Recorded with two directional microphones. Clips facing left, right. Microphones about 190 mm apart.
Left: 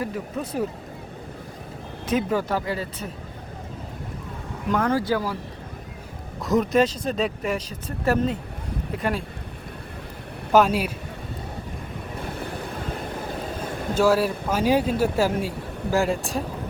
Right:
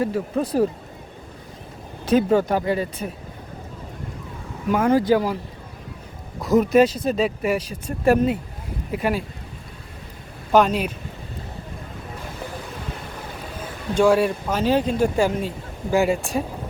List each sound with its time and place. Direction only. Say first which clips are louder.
0.0 s speech: right 6 dB; 35° right (ahead or behind)
2.0 s speech: right 6 dB; 30° right (ahead or behind)
2.5 s speech: right 5 dB; 20° right (ahead or behind)
4.7 s speech: right 5 dB; 10° right (ahead or behind)
6.4 s speech: right 4 dB; centre (ahead or behind)
10.5 s speech: right 1 dB; 5° left (ahead or behind)
13.9 s speech: right 3 dB; 5° left (ahead or behind)